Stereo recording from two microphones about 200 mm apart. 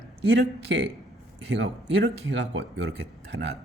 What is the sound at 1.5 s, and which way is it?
Speech, 60° right (ahead or behind).